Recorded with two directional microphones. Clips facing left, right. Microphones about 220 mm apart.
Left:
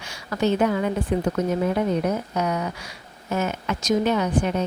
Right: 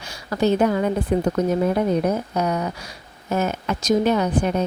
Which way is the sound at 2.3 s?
35° right (ahead or behind).